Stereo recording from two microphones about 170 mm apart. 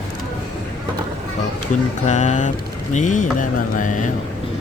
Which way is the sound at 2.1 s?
45° left (ahead or behind).